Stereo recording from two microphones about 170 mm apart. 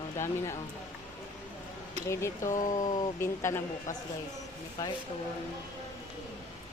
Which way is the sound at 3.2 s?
15° left (ahead or behind).